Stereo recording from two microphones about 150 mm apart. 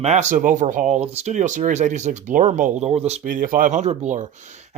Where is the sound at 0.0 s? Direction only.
50° right (ahead or behind).